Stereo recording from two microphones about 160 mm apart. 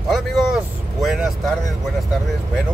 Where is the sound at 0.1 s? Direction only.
Centre (ahead or behind).